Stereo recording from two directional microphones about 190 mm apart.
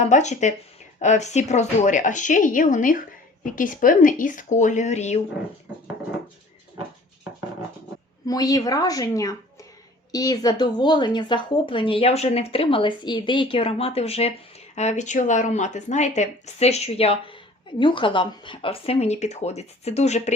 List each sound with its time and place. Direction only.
0.0 s a woman's voice: 40° left (ahead or behind)
8.3 s a woman's voice: 20° left (ahead or behind); by 20.3 s 35° left (ahead or behind)